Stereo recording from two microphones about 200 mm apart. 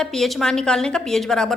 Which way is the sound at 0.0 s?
Centre (ahead or behind).